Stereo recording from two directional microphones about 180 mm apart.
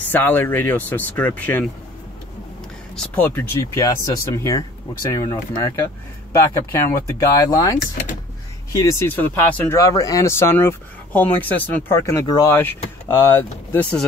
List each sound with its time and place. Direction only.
0.0 s speech: 10° left (ahead or behind)
3.0 s speech: 10° left (ahead or behind)